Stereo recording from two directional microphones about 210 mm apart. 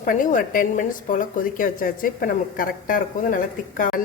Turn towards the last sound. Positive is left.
turn(degrees=40)  # may be behind; listen again after turning